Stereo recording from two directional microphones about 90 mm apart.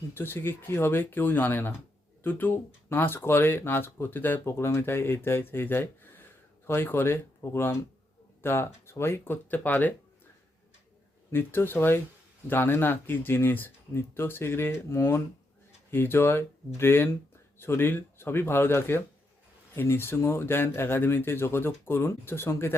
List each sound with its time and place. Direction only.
0.1 s speech: 25° left (ahead or behind)
11.3 s speech: 25° left (ahead or behind)